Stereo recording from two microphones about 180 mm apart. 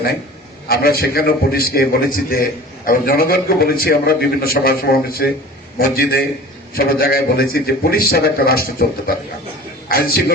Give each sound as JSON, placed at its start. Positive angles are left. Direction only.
{"t": 0.7, "sound": "a man's voice", "side_deg": 55}